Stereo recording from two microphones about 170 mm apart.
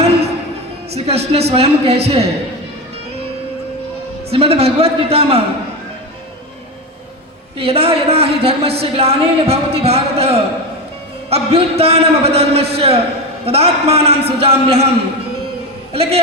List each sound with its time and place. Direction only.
0.9 s a woman's voice: 35° right (ahead or behind)
4.3 s a woman's voice: 35° right (ahead or behind)
7.6 s a woman's voice: 35° right (ahead or behind)